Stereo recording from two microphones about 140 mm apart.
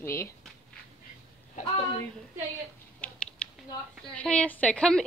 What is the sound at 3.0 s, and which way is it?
Typing, 10° left (ahead or behind).